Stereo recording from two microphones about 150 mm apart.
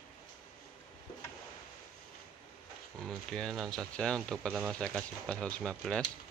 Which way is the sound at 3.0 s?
5° left (ahead or behind).